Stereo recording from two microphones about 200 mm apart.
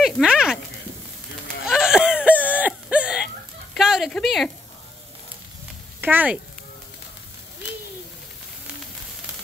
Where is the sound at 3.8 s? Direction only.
Centre (ahead or behind).